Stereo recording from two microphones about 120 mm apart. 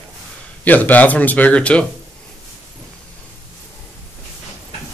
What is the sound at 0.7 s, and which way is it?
Speech, 15° left (ahead or behind).